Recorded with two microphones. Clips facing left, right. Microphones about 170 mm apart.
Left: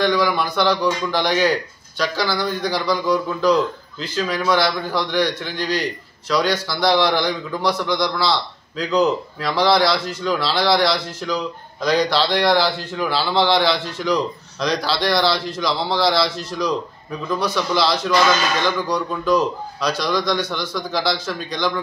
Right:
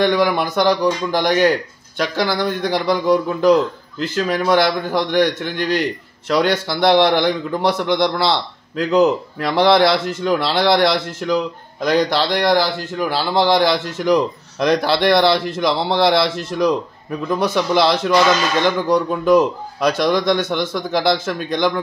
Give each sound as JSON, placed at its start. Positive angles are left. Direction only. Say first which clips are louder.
{"t": 0.0, "sound": "a man's voice", "louder": "right 3 dB", "side_deg": -55}